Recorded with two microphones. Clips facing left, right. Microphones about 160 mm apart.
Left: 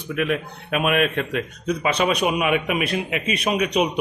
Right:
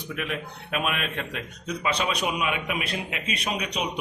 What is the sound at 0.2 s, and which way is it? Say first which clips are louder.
A man's voice: left 10 dB; 55° left (ahead or behind).